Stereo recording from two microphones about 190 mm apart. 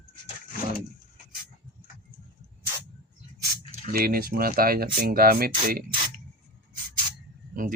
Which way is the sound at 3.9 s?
50° right (ahead or behind).